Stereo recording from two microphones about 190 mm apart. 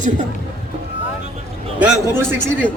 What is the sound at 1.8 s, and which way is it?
Speech, 10° right (ahead or behind).